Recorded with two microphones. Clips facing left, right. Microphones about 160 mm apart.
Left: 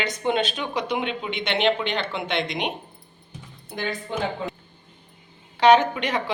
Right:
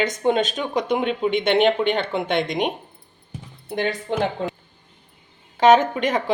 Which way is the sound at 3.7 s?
65° right (ahead or behind).